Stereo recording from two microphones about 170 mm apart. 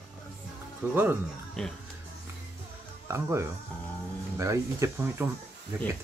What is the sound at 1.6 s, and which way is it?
Speech, 5° left (ahead or behind).